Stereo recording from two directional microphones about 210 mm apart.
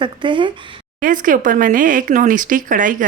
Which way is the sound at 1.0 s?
40° right (ahead or behind).